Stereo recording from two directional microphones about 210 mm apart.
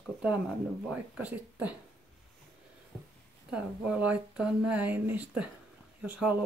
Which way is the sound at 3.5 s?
5° right (ahead or behind).